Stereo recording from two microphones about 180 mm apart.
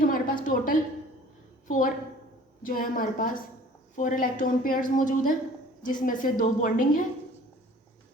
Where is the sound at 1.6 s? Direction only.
45° left (ahead or behind).